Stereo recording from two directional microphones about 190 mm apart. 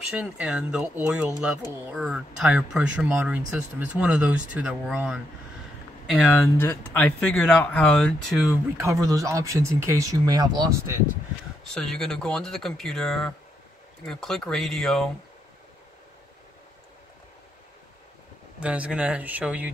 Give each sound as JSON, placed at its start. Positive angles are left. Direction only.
{"t": 0.1, "sound": "speech", "side_deg": -5}
{"t": 6.0, "sound": "speech", "side_deg": 10}
{"t": 8.7, "sound": "speech", "side_deg": -15}
{"t": 11.7, "sound": "speech", "side_deg": 5}
{"t": 18.6, "sound": "speech", "side_deg": -5}